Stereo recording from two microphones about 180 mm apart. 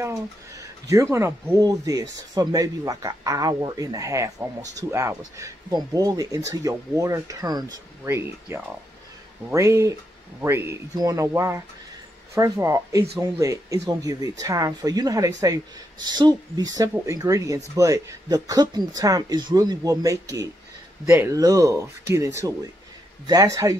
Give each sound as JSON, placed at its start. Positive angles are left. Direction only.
{"t": 0.8, "sound": "speech", "side_deg": -15}